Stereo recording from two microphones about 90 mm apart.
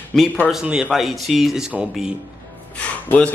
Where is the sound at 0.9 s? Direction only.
Centre (ahead or behind).